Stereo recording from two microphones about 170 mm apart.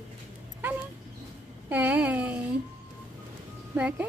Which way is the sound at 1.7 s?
10° right (ahead or behind).